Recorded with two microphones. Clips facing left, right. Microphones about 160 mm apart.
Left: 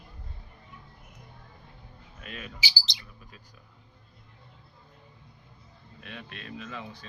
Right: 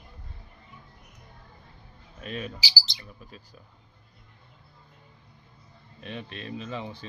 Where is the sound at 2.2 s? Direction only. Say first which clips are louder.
Right 8 dB; 35° right (ahead or behind).